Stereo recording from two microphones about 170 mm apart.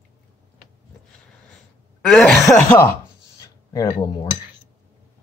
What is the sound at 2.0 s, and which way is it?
Speech, centre (ahead or behind).